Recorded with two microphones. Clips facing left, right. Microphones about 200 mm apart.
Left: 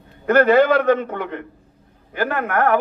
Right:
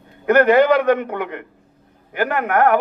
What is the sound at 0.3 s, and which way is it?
A man's voice, 15° right (ahead or behind).